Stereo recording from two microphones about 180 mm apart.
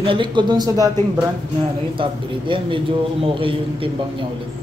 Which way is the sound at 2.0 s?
30° right (ahead or behind).